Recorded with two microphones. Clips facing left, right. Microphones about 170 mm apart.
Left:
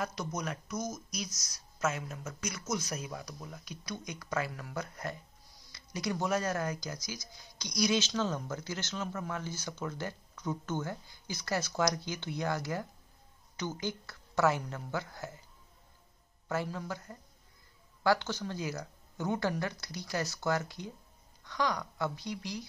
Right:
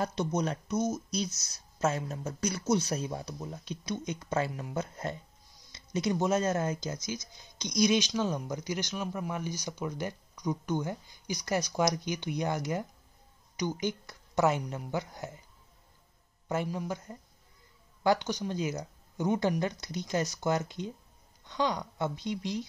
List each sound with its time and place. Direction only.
0.0 s speech: 30° right (ahead or behind)
16.4 s speech: 15° right (ahead or behind)